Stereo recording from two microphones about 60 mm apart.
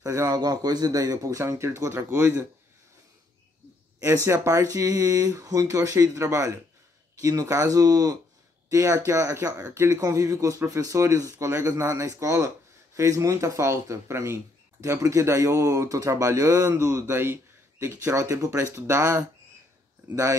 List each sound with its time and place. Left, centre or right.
0.0 s a man's voice: right
0.4 s speech: right
1.6 s speech: right
4.3 s speech: right
7.2 s speech: right
8.6 s a man's voice: right
17.1 s speech: right
18.1 s a man's voice: right
18.9 s speech: right